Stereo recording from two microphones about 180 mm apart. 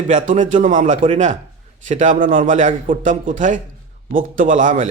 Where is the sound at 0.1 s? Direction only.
40° right (ahead or behind).